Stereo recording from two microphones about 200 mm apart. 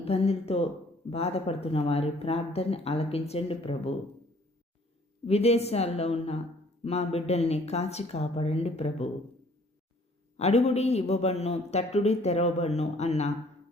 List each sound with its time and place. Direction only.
0.0 s a man's voice: 30° left (ahead or behind)
5.2 s a man's voice: 30° left (ahead or behind)
10.3 s a man's voice: 30° left (ahead or behind)